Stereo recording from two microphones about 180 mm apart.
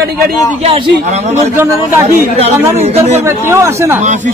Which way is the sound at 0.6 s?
35° right (ahead or behind).